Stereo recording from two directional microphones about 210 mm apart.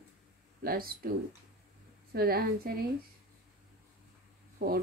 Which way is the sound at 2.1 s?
45° right (ahead or behind).